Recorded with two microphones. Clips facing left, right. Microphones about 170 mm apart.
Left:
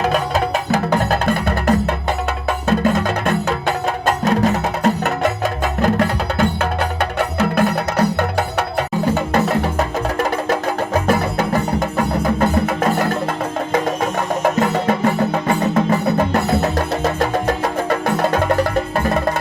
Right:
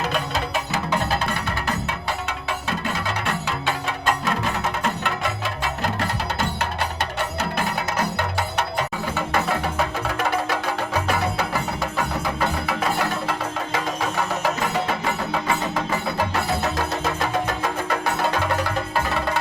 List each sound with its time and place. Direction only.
0.0 s music: 45° left (ahead or behind)
7.0 s music: 55° left (ahead or behind)
7.9 s music: 45° left (ahead or behind)
14.4 s music: 40° left (ahead or behind)